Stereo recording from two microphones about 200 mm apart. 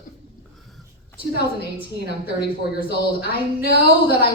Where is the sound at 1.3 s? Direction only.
50° left (ahead or behind).